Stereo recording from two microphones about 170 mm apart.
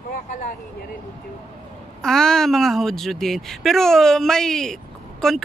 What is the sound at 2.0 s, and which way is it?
Speech, 5° left (ahead or behind).